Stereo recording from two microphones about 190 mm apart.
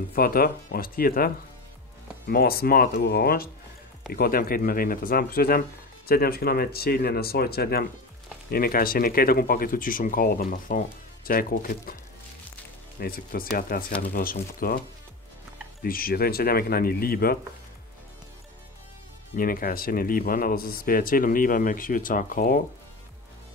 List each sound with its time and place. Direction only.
0.1 s speech: 50° left (ahead or behind)
13.0 s speech: 50° left (ahead or behind)
15.8 s speech: 50° left (ahead or behind)
19.3 s speech: 50° left (ahead or behind)